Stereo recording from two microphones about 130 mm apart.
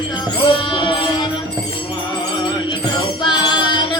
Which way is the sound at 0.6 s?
40° left (ahead or behind).